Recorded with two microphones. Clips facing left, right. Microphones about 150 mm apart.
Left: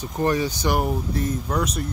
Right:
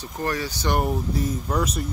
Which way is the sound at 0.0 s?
20° left (ahead or behind).